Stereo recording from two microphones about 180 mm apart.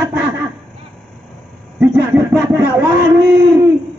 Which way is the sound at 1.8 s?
10° right (ahead or behind).